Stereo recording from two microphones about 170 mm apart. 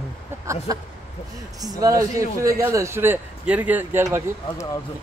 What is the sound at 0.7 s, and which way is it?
A man's voice, 20° right (ahead or behind).